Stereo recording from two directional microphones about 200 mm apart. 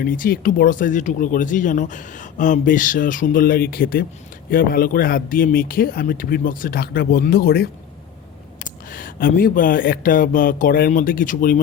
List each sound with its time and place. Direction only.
0.0 s speech: 45° left (ahead or behind)